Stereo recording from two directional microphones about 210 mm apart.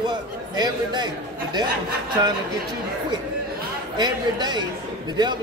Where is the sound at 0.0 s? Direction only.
20° right (ahead or behind).